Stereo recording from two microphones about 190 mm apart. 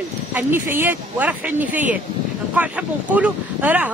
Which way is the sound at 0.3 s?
10° right (ahead or behind).